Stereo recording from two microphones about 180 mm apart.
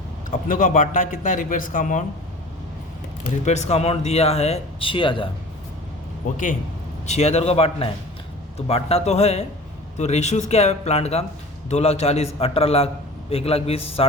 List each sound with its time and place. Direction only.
0.3 s a man's voice: 50° left (ahead or behind)
3.4 s speech: 35° left (ahead or behind)
6.3 s a man's voice: 50° left (ahead or behind)
7.1 s speech: 35° left (ahead or behind)